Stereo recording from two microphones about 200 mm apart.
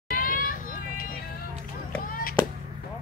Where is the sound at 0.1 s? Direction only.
45° left (ahead or behind).